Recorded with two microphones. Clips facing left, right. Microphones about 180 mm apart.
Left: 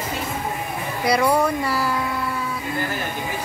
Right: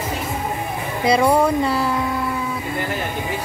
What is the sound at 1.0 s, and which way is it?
Speech, 25° right (ahead or behind).